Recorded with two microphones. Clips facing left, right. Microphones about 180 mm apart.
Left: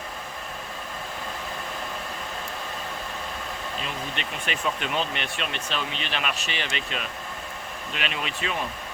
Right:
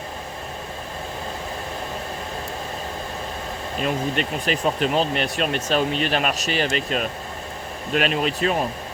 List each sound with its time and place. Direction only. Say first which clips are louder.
3.8 s speech: right 10 dB; 45° right (ahead or behind)